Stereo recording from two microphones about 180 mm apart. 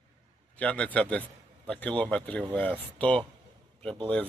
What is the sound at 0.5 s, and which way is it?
A man's voice, 5° left (ahead or behind).